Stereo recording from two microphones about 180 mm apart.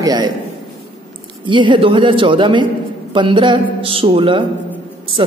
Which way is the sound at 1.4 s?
25° right (ahead or behind).